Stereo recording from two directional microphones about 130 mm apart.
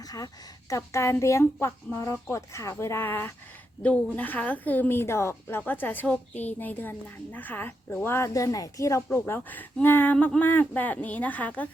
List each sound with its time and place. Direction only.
0.7 s a woman's voice: 20° left (ahead or behind)